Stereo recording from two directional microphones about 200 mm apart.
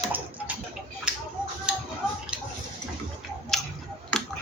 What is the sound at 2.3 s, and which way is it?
Bathtub, 5° right (ahead or behind).